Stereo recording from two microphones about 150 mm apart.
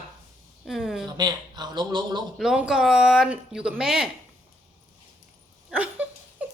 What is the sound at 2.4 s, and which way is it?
Speech, 5° right (ahead or behind).